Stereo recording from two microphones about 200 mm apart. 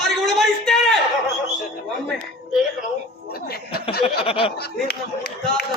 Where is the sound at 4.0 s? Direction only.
30° left (ahead or behind).